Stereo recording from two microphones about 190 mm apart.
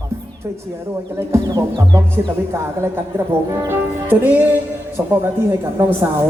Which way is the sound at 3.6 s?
10° right (ahead or behind).